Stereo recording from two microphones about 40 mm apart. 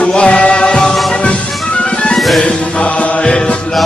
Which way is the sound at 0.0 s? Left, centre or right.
Left.